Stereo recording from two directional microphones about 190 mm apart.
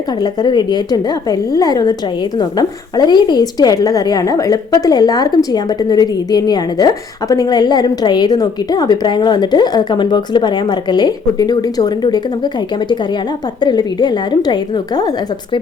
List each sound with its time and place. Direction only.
0.2 s a woman's voice: 20° left (ahead or behind)
13.6 s a woman's voice: 20° left (ahead or behind)